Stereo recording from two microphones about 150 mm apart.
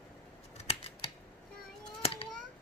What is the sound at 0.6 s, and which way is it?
Scissors, 45° left (ahead or behind).